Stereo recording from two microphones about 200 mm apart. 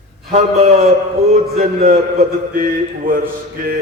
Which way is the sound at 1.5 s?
45° right (ahead or behind).